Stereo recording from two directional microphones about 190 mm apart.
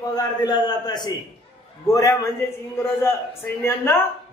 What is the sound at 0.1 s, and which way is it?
A man's voice, 20° left (ahead or behind).